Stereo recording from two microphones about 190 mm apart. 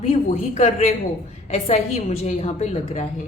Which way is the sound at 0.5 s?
35° left (ahead or behind).